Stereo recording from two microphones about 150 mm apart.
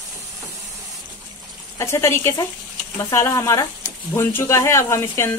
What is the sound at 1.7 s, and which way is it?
Speech, 20° left (ahead or behind).